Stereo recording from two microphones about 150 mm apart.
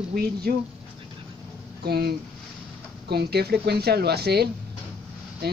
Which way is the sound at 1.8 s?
90° right.